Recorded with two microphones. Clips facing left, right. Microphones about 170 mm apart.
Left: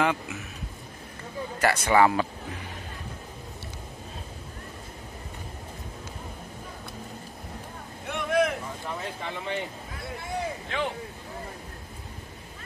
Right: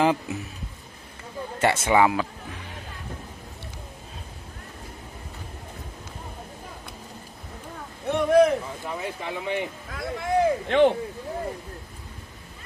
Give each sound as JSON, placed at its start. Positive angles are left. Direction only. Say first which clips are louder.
{"t": 0.0, "sound": "speech", "louder": "right 4 dB", "side_deg": -30}
{"t": 1.6, "sound": "speech", "louder": "right 2 dB", "side_deg": -25}
{"t": 1.9, "sound": "speech", "louder": "even", "side_deg": -10}
{"t": 8.1, "sound": "a sound", "louder": "right 7 dB", "side_deg": -35}
{"t": 9.2, "sound": "speech", "louder": "right 5 dB", "side_deg": -15}
{"t": 9.9, "sound": "speech", "louder": "right 10 dB", "side_deg": -90}